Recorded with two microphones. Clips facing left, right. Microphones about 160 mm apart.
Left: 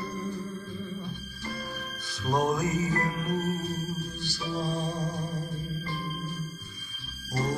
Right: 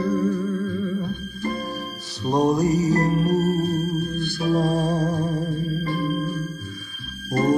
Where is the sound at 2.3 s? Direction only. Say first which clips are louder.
Right 8 dB; 35° right (ahead or behind); by 5.4 s 55° right (ahead or behind).